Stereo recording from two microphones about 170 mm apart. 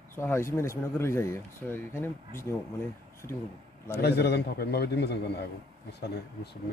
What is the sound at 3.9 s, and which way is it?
A man's voice, 75° left (ahead or behind).